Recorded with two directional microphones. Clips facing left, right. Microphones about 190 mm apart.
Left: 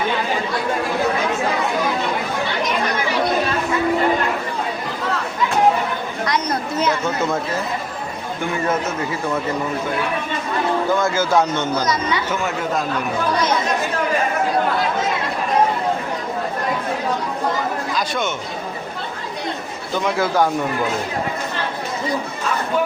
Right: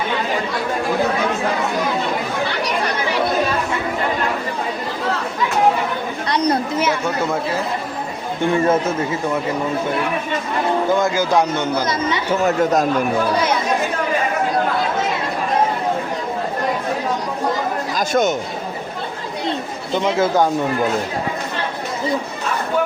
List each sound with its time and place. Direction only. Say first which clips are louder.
6.2 s chatter: right 4 dB; 35° right (ahead or behind)
6.7 s chatter: even; 5° right (ahead or behind)
8.5 s speech: right 5 dB; 30° right (ahead or behind)
11.0 s a man's voice: right 1 dB; 15° right (ahead or behind)
11.9 s speech: right 1 dB; 25° right (ahead or behind)
12.4 s speech: right 6 dB; 40° right (ahead or behind)
17.9 s speech: right 9 dB; 45° right (ahead or behind)
19.5 s chatter: right 5 dB; 25° right (ahead or behind)